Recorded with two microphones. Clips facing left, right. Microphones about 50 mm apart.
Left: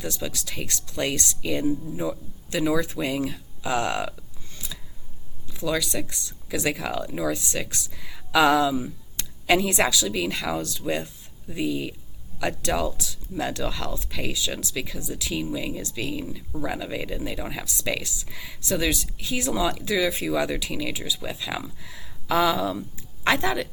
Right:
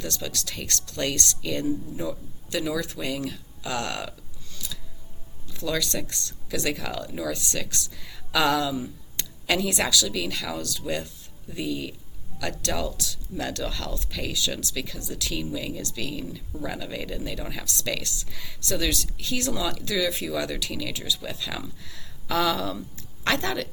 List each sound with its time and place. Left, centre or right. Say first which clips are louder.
0.0 s speech: left 1 dB; centre
4.5 s a sound: even; left
5.5 s speech: left 2 dB; centre